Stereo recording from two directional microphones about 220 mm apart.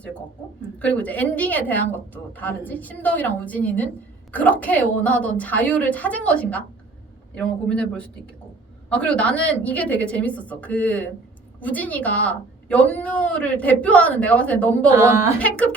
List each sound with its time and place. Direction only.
0.8 s a woman's voice: 5° left (ahead or behind)
14.9 s speech: 10° right (ahead or behind)
15.4 s a woman's voice: 5° left (ahead or behind)